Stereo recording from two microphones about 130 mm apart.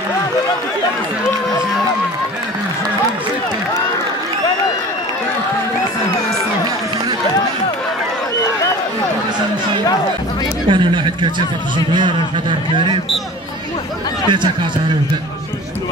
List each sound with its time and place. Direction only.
10.7 s chatter: 35° right (ahead or behind)
11.9 s a man's voice: 35° right (ahead or behind)
14.3 s a man's voice: 35° right (ahead or behind)